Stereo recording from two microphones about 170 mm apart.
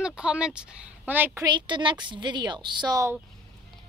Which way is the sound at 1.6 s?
30° right (ahead or behind).